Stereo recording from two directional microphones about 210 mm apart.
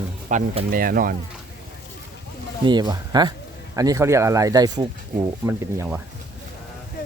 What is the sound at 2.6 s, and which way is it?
Speech, 20° right (ahead or behind).